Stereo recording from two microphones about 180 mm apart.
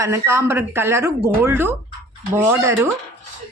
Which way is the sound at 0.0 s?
15° right (ahead or behind).